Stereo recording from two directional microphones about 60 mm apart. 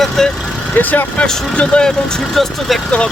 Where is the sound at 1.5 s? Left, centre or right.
Centre.